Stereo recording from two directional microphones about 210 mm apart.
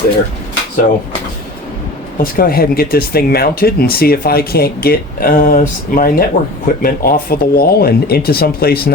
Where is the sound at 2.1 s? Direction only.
45° left (ahead or behind).